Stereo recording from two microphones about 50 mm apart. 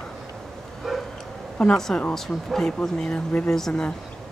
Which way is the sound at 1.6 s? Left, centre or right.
Centre.